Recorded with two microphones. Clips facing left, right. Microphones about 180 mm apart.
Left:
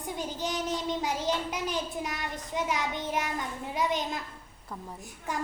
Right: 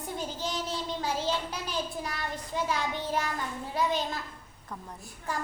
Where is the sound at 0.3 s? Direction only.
15° left (ahead or behind).